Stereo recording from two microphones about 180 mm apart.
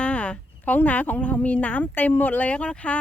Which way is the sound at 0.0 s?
5° left (ahead or behind).